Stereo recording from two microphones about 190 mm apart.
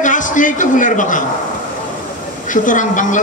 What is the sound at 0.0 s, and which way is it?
A man's voice, 40° left (ahead or behind).